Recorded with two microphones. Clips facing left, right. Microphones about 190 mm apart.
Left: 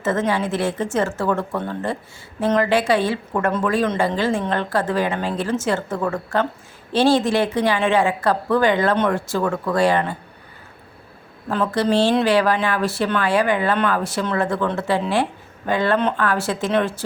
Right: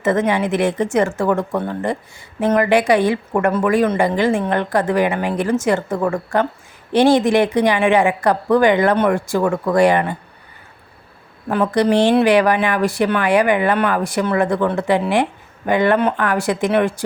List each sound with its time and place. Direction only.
0.0 s speech: 15° right (ahead or behind)
11.4 s speech: 15° right (ahead or behind)